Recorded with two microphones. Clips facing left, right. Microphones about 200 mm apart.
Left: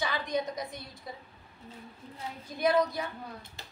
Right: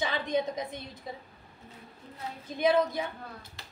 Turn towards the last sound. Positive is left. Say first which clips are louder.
# right 1 dB
turn(degrees=-20)  # may be behind; listen again after turning